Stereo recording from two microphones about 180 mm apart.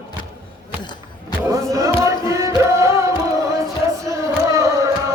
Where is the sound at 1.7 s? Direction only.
15° right (ahead or behind).